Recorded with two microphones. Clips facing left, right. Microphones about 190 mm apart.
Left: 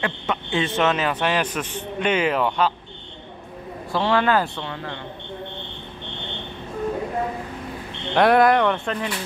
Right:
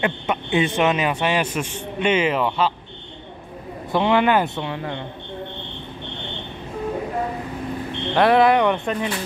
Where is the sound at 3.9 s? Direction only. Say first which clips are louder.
Right 2 dB; 15° right (ahead or behind).